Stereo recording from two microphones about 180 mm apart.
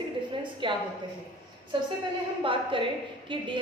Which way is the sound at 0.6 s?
30° right (ahead or behind).